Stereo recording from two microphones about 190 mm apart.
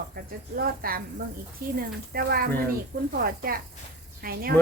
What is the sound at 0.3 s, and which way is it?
Speech, 50° right (ahead or behind).